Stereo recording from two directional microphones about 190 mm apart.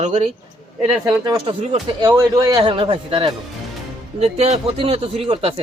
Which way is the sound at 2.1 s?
15° right (ahead or behind).